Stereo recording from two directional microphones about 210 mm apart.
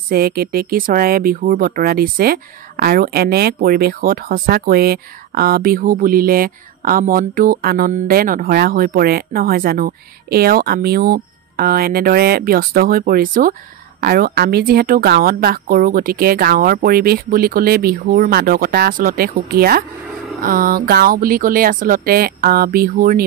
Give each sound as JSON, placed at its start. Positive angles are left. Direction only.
{"t": 0.1, "sound": "speech", "side_deg": -45}